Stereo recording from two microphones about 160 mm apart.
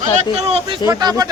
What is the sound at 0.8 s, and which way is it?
Speech, 25° right (ahead or behind).